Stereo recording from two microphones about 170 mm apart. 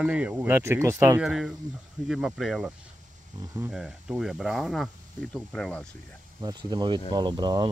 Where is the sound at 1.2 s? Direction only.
Centre (ahead or behind).